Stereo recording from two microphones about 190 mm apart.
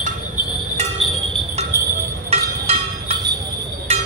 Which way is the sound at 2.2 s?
30° right (ahead or behind).